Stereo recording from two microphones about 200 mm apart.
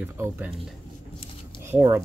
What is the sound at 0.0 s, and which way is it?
Speech, 10° right (ahead or behind).